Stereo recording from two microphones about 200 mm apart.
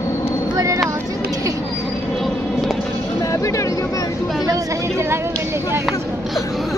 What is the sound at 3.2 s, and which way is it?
Vehicle, 15° left (ahead or behind).